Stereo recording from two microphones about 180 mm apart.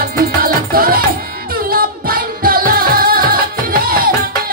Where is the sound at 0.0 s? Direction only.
55° right (ahead or behind).